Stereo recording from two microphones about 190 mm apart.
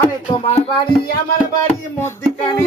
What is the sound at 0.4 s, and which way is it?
Music, 30° left (ahead or behind).